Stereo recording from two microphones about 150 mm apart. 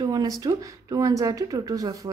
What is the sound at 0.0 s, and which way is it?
Speech, 25° right (ahead or behind).